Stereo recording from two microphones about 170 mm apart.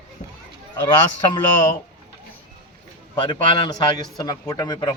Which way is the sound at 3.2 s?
30° left (ahead or behind).